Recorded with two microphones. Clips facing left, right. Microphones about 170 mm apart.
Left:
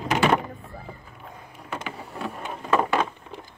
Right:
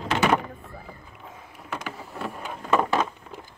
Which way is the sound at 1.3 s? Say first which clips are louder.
Even; centre (ahead or behind).